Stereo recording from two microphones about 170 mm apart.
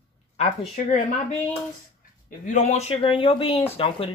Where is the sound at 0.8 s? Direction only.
50° left (ahead or behind).